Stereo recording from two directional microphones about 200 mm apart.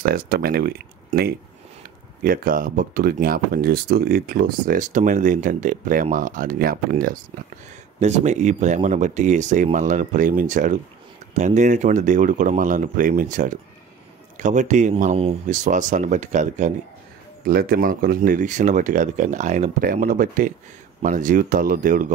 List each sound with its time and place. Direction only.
0.0 s speech: 50° right (ahead or behind)
8.0 s speech: 35° right (ahead or behind)